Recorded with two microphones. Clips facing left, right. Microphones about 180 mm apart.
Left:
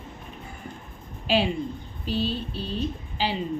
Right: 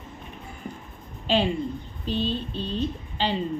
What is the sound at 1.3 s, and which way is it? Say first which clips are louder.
A woman's voice: right 1 dB; 5° left (ahead or behind).